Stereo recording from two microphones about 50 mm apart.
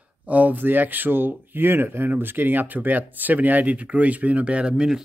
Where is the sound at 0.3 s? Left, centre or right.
Right.